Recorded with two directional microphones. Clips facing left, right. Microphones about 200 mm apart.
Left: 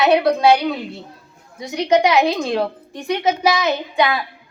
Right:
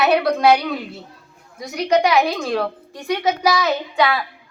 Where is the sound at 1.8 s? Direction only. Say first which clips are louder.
Left 1 dB; 20° left (ahead or behind).